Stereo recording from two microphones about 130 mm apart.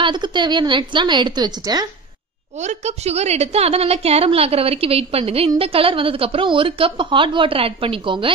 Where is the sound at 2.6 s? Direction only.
60° right (ahead or behind).